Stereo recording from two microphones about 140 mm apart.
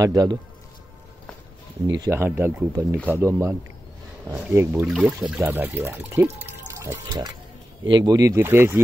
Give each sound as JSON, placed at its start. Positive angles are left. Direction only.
{"t": 0.0, "sound": "speech", "side_deg": -25}
{"t": 1.9, "sound": "speech", "side_deg": -25}